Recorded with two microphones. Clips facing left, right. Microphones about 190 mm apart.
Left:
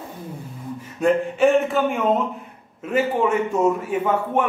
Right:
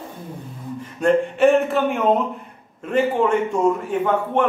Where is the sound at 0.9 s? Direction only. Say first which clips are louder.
Right 1 dB; centre (ahead or behind).